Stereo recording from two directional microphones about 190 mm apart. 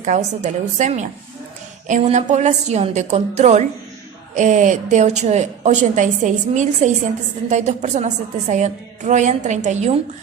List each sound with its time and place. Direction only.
0.0 s a woman's voice: 40° right (ahead or behind)